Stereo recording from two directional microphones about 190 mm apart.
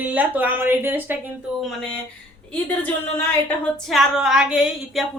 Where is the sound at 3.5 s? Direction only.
Centre (ahead or behind).